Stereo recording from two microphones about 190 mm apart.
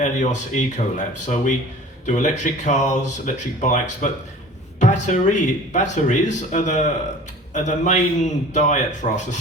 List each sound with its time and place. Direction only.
0.0 s speech: 40° left (ahead or behind)